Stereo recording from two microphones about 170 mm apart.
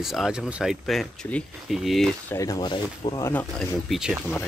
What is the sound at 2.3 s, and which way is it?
Speech, 20° left (ahead or behind).